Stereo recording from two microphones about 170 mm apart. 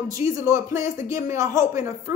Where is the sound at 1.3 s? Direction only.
15° right (ahead or behind).